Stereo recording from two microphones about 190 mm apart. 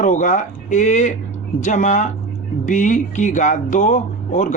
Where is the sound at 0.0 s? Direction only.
40° left (ahead or behind).